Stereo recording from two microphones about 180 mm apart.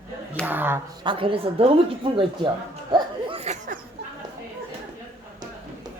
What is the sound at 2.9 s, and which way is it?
Laughter, 30° right (ahead or behind).